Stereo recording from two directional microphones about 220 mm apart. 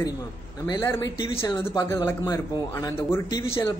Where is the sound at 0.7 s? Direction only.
15° left (ahead or behind).